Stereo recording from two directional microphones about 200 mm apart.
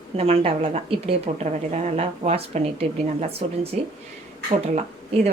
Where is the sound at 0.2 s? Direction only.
30° right (ahead or behind).